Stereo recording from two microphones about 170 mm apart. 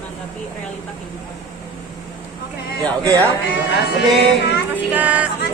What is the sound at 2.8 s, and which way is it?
Speech, 20° right (ahead or behind).